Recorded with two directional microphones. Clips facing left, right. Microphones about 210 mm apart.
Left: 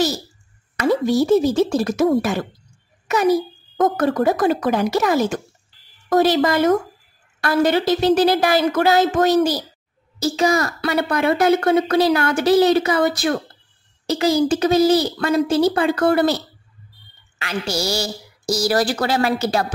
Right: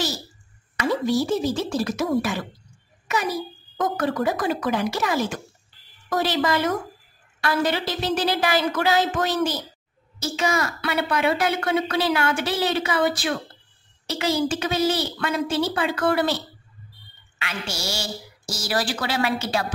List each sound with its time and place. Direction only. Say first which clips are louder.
1.6 s a woman's voice: left 7 dB; 45° left (ahead or behind)
3.7 s a woman's voice: left 6 dB; 50° left (ahead or behind)